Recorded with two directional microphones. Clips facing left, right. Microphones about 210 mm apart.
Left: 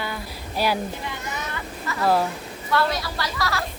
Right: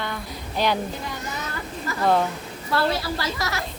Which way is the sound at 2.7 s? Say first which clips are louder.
Even; 25° right (ahead or behind).